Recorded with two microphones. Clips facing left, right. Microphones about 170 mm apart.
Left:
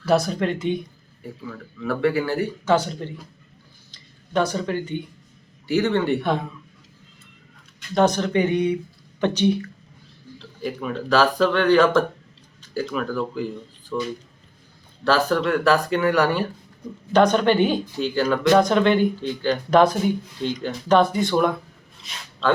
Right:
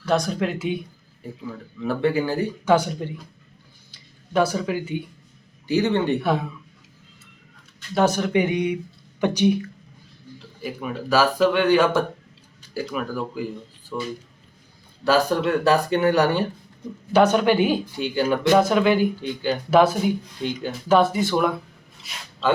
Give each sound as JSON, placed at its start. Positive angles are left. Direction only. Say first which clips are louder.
{"t": 0.0, "sound": "speech", "louder": "left 2 dB", "side_deg": 5}
{"t": 1.5, "sound": "speech", "louder": "even", "side_deg": -25}
{"t": 5.6, "sound": "speech", "louder": "even", "side_deg": -15}
{"t": 6.2, "sound": "speech", "louder": "right 1 dB", "side_deg": -5}
{"t": 7.9, "sound": "speech", "louder": "left 1 dB", "side_deg": -10}
{"t": 15.0, "sound": "speech", "louder": "even", "side_deg": -10}
{"t": 15.4, "sound": "speech", "louder": "even", "side_deg": -20}
{"t": 17.1, "sound": "speech", "louder": "even", "side_deg": -10}